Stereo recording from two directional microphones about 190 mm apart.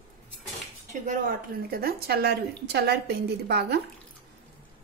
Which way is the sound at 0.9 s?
45° right (ahead or behind).